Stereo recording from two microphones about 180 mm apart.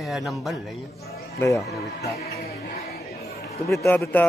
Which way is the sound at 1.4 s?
15° left (ahead or behind).